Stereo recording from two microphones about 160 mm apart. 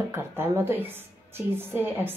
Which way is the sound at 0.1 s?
15° right (ahead or behind).